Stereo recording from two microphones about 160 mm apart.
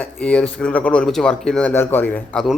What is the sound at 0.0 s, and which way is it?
Speech, 5° left (ahead or behind).